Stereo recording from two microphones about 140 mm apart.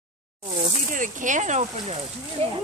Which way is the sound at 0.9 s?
65° right (ahead or behind).